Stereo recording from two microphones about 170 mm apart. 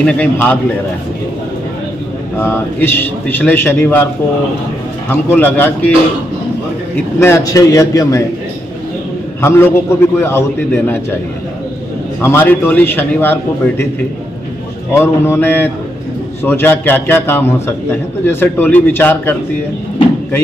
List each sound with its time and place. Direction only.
0.0 s a man's voice: 5° left (ahead or behind)
2.3 s a man's voice: 10° left (ahead or behind)
5.1 s a man's voice: 10° left (ahead or behind)
7.2 s a man's voice: 15° left (ahead or behind)
9.4 s a man's voice: 15° left (ahead or behind)
12.2 s a man's voice: 15° left (ahead or behind)
14.9 s a man's voice: 15° left (ahead or behind)